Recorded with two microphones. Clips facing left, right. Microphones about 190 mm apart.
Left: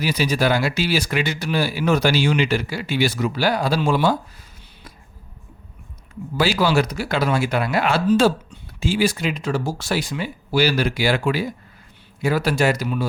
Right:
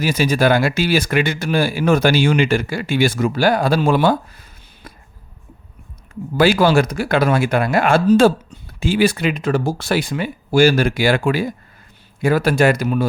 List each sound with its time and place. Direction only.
0.0 s speech: 50° right (ahead or behind)
6.3 s speech: 50° right (ahead or behind)